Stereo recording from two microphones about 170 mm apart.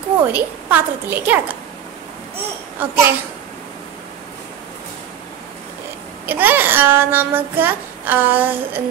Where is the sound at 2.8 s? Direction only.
10° right (ahead or behind).